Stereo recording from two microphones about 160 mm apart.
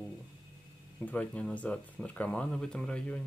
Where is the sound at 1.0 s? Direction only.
10° left (ahead or behind).